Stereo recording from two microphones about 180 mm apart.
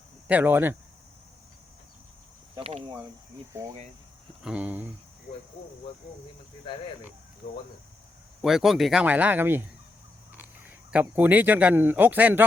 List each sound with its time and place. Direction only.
0.3 s speech: 10° right (ahead or behind)
2.6 s speech: 30° right (ahead or behind)
4.4 s speech: 5° right (ahead or behind)
8.4 s speech: centre (ahead or behind)